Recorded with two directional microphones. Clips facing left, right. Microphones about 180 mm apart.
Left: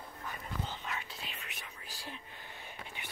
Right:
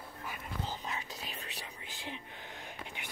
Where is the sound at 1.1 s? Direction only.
40° right (ahead or behind).